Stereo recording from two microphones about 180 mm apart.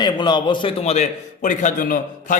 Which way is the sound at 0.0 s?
25° left (ahead or behind).